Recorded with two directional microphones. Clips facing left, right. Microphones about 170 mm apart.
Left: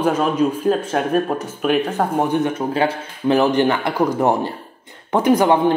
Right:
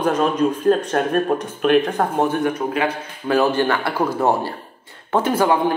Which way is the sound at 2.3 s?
25° left (ahead or behind).